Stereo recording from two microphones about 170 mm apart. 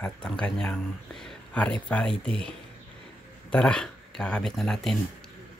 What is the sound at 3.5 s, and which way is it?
Speech, 5° left (ahead or behind).